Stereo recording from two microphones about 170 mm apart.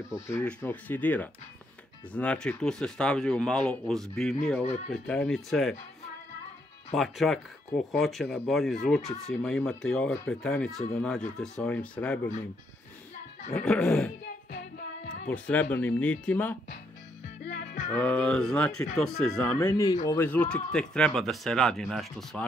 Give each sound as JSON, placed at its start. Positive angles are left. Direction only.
{"t": 0.3, "sound": "speech", "side_deg": 5}
{"t": 4.6, "sound": "speech", "side_deg": 40}
{"t": 5.0, "sound": "speech", "side_deg": 5}
{"t": 7.0, "sound": "speech", "side_deg": 0}
{"t": 13.5, "sound": "speech", "side_deg": 5}
{"t": 14.2, "sound": "music", "side_deg": 65}
{"t": 15.2, "sound": "speech", "side_deg": 10}
{"t": 17.9, "sound": "speech", "side_deg": 5}
{"t": 19.7, "sound": "speech", "side_deg": 20}